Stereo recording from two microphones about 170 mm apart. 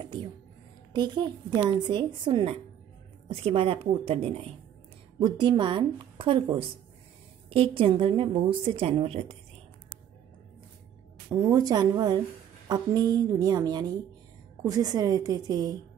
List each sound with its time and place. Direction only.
0.0 s a sound: 30° right (ahead or behind)
0.9 s a woman's voice: 25° right (ahead or behind)
11.2 s a woman's voice: 20° right (ahead or behind)